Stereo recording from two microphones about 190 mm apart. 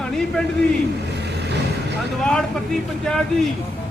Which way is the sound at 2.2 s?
Centre (ahead or behind).